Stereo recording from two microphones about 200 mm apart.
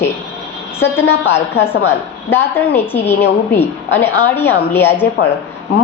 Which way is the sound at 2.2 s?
10° left (ahead or behind).